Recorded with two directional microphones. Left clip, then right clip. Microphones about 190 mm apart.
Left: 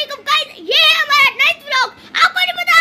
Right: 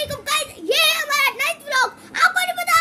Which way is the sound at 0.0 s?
10° right (ahead or behind).